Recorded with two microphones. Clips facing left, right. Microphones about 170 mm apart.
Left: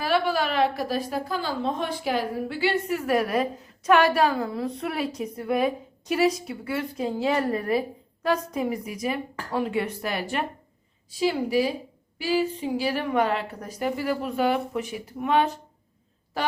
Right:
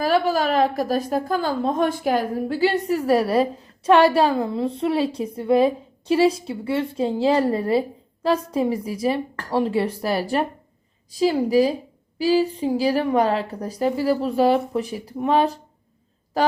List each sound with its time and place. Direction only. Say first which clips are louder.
0.0 s a woman's voice: right 4 dB; 40° right (ahead or behind)